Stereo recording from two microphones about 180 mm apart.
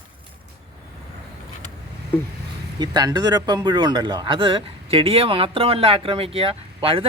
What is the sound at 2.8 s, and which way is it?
A man's voice, 20° right (ahead or behind).